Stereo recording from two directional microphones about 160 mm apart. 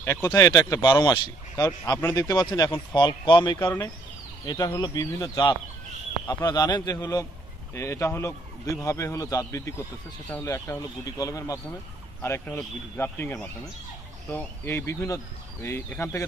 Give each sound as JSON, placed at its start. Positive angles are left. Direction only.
{"t": 0.0, "sound": "speech", "side_deg": 15}
{"t": 3.5, "sound": "speech", "side_deg": 15}